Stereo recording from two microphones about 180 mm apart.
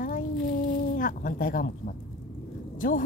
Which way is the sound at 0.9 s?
50° left (ahead or behind).